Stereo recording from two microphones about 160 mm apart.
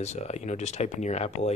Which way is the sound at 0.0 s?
45° left (ahead or behind).